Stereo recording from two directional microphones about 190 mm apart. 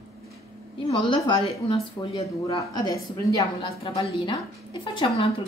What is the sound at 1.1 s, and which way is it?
A woman's voice, 25° left (ahead or behind).